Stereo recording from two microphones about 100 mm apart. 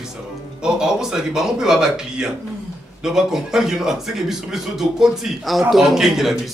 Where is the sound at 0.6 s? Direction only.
5° right (ahead or behind).